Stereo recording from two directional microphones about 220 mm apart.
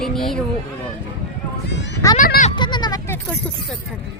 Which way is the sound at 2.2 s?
40° left (ahead or behind).